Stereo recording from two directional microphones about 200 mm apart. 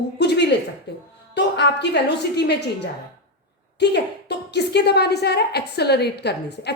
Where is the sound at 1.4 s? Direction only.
55° left (ahead or behind).